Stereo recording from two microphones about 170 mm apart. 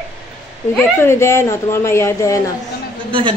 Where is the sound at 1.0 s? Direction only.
15° left (ahead or behind).